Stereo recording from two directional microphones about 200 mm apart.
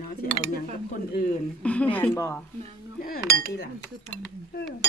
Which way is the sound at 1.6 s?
5° left (ahead or behind).